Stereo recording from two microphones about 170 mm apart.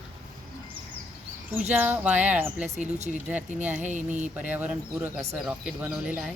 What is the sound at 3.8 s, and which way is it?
Speech, 45° right (ahead or behind).